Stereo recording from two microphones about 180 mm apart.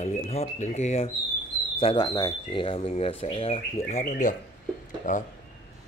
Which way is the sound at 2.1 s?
20° left (ahead or behind).